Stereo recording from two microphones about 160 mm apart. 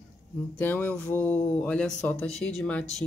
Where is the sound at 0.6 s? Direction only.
10° left (ahead or behind).